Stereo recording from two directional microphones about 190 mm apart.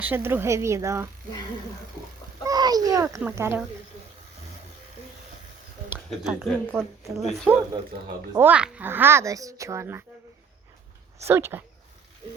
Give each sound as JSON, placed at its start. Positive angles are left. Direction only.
{"t": 0.0, "sound": "speech", "side_deg": -10}
{"t": 2.4, "sound": "a sound", "side_deg": -20}
{"t": 3.2, "sound": "speech", "side_deg": -10}
{"t": 6.1, "sound": "speech", "side_deg": -5}
{"t": 8.3, "sound": "speech", "side_deg": -10}
{"t": 11.3, "sound": "speech", "side_deg": -10}